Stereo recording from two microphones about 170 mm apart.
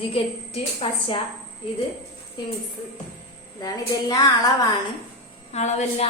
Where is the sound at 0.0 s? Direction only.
35° left (ahead or behind).